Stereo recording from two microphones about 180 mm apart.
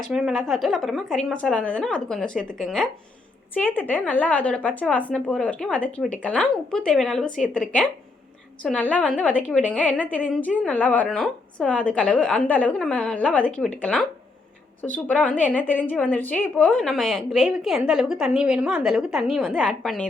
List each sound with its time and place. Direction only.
0.0 s a woman's voice: 5° right (ahead or behind)
8.7 s a woman's voice: 10° left (ahead or behind)